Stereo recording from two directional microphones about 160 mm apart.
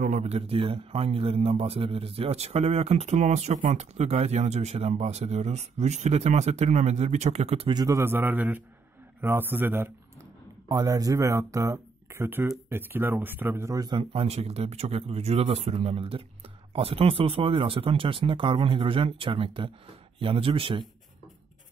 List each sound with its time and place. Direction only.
0.0 s speech: 45° right (ahead or behind)
7.7 s a man's voice: 20° right (ahead or behind)